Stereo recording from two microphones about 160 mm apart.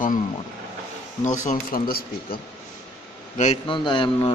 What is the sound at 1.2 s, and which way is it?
Speech, 50° left (ahead or behind).